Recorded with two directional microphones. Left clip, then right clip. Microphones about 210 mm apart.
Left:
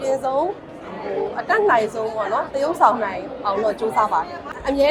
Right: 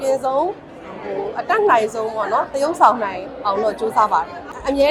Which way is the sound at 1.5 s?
10° right (ahead or behind).